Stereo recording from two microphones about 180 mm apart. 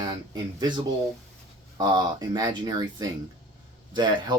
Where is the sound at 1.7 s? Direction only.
25° right (ahead or behind).